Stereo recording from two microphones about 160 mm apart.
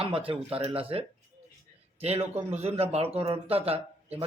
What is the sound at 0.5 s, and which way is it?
A man's voice, 35° right (ahead or behind).